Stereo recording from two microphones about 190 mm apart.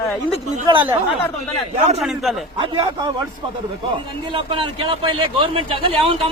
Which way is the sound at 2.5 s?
25° right (ahead or behind).